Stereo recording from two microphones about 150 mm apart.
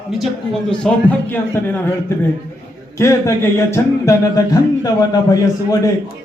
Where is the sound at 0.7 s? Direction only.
10° left (ahead or behind).